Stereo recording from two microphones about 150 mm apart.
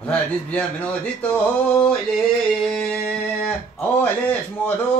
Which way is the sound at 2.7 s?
5° left (ahead or behind).